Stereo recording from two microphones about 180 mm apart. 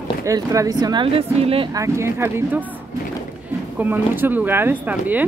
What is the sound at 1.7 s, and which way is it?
Speech, 15° right (ahead or behind).